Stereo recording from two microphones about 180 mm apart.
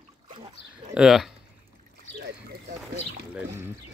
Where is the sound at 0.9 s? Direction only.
5° right (ahead or behind).